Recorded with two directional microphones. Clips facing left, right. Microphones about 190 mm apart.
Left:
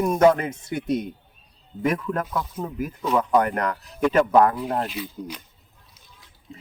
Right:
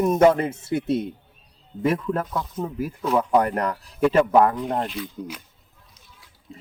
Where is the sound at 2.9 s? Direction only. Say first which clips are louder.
Even; 5° right (ahead or behind).